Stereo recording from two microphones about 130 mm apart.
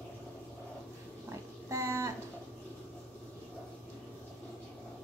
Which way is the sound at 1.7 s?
20° right (ahead or behind).